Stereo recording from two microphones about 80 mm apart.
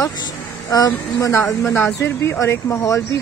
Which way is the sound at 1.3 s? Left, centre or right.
Left.